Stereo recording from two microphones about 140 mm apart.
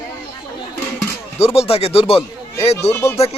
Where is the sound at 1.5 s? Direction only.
45° left (ahead or behind).